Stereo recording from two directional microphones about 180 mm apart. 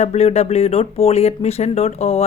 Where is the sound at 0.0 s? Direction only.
35° left (ahead or behind).